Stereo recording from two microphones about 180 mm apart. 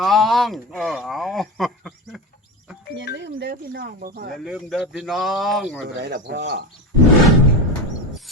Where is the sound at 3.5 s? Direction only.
55° right (ahead or behind).